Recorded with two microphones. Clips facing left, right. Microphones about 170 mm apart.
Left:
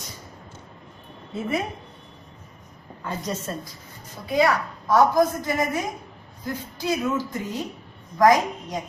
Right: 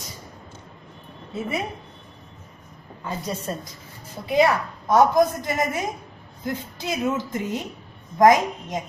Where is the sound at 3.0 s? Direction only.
10° right (ahead or behind).